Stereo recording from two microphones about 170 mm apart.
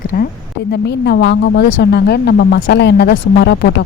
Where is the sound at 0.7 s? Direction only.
75° left (ahead or behind).